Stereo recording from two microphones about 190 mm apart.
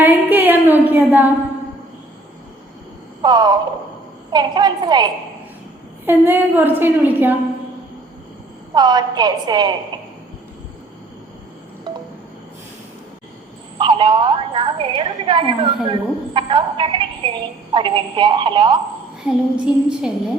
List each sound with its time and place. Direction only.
0.0 s a sound: 10° right (ahead or behind)
3.2 s a woman's voice: 20° right (ahead or behind)
6.1 s a woman's voice: 10° right (ahead or behind)
8.7 s a woman's voice: 20° right (ahead or behind)
13.7 s a woman's voice: 25° right (ahead or behind)
19.2 s a sound: 5° right (ahead or behind)